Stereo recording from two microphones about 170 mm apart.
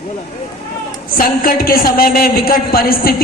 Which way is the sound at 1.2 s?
60° left (ahead or behind).